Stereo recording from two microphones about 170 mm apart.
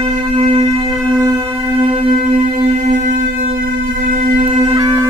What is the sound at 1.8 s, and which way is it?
Music, 35° right (ahead or behind).